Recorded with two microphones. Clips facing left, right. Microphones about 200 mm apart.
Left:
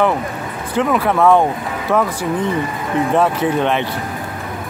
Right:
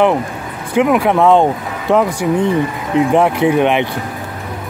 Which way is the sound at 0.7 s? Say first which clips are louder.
Right 4 dB; 15° right (ahead or behind).